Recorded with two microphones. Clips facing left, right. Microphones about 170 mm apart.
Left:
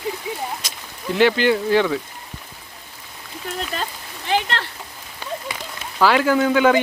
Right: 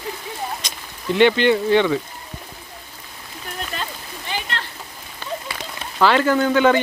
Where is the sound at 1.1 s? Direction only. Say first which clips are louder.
Right 1 dB; centre (ahead or behind).